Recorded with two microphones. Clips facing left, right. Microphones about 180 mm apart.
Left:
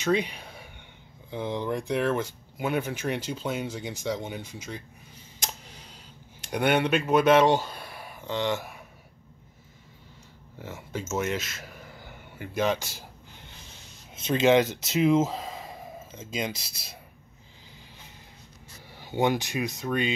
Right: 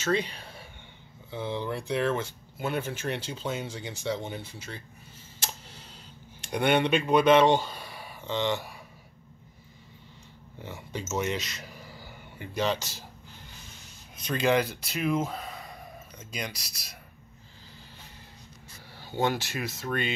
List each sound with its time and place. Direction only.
0.0 s speech: 15° left (ahead or behind)
5.5 s tick: 15° left (ahead or behind)
6.4 s speech: 10° left (ahead or behind)
10.6 s a sound: centre (ahead or behind)
12.5 s speech: 10° left (ahead or behind)
14.1 s speech: 25° left (ahead or behind)
18.9 s speech: 15° left (ahead or behind)